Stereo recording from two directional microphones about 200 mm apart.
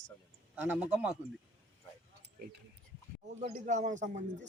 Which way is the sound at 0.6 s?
10° right (ahead or behind).